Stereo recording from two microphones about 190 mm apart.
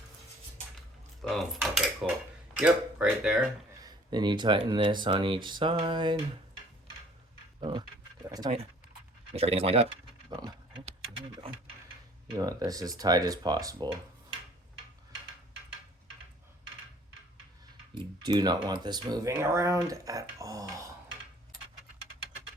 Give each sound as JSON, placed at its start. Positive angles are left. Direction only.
{"t": 1.2, "sound": "cutlery", "side_deg": 0}
{"t": 2.6, "sound": "speech", "side_deg": -5}
{"t": 3.8, "sound": "speech", "side_deg": -20}
{"t": 7.6, "sound": "speech", "side_deg": -25}
{"t": 12.4, "sound": "speech", "side_deg": -20}
{"t": 17.9, "sound": "speech", "side_deg": -25}